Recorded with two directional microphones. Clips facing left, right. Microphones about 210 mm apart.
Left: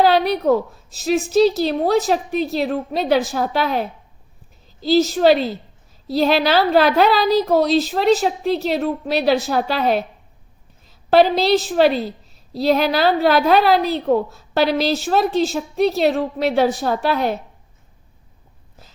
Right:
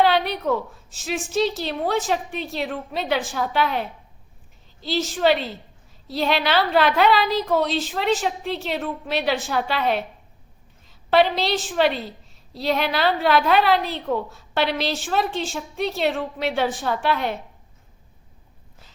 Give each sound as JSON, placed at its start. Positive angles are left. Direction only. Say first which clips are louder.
{"t": 0.0, "sound": "a woman's voice", "louder": "left 5 dB", "side_deg": 40}